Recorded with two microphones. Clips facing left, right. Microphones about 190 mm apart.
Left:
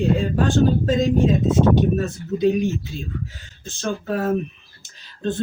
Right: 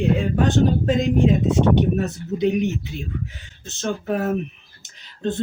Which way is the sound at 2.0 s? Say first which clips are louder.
Left 1 dB; 20° right (ahead or behind).